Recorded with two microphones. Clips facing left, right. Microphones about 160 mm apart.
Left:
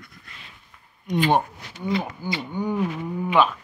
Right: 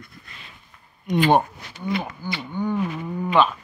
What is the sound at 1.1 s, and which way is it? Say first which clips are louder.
Speech: right 3 dB; 65° right (ahead or behind).